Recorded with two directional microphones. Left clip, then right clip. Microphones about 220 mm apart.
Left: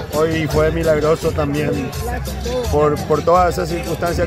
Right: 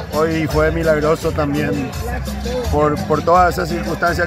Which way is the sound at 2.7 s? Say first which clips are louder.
Left 1 dB; 10° left (ahead or behind).